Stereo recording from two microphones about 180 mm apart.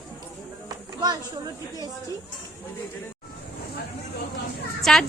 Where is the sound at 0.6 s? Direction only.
20° right (ahead or behind).